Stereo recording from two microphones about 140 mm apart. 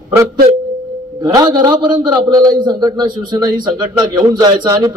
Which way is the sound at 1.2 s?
25° right (ahead or behind).